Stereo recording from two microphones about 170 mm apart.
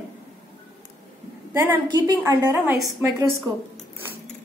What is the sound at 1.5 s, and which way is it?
A woman's voice, 15° right (ahead or behind).